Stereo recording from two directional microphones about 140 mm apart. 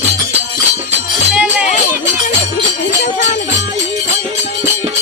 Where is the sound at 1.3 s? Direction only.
10° right (ahead or behind).